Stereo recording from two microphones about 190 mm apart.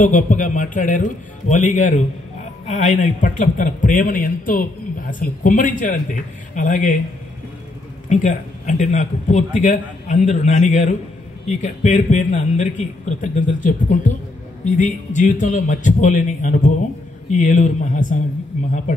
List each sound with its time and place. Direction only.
0.0 s a man's voice: 40° left (ahead or behind)
8.1 s a man's voice: 40° left (ahead or behind)